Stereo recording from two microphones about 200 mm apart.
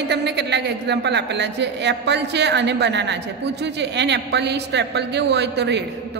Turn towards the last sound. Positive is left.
turn(degrees=-60)  # may be behind; listen again after turning